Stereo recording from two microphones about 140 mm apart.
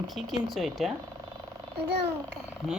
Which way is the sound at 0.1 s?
Centre (ahead or behind).